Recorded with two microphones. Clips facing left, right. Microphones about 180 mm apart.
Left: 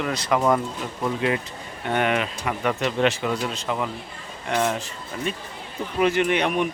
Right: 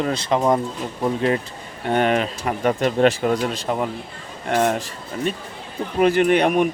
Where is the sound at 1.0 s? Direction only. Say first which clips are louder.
Right 4 dB; 35° right (ahead or behind).